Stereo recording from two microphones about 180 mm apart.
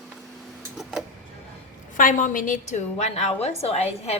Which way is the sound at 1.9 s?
50° left (ahead or behind).